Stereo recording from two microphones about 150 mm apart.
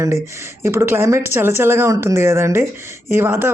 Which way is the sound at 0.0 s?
20° right (ahead or behind).